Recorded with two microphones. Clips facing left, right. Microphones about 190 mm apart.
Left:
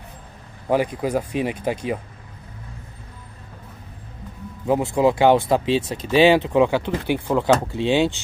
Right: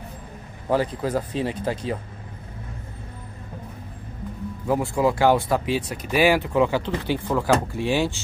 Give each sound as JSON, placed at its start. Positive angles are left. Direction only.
{"t": 0.7, "sound": "speech", "side_deg": 15}
{"t": 4.6, "sound": "speech", "side_deg": 20}